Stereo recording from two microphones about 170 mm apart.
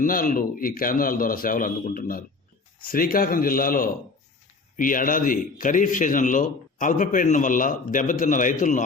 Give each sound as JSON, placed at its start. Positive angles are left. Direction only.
{"t": 0.0, "sound": "a man's voice", "side_deg": 55}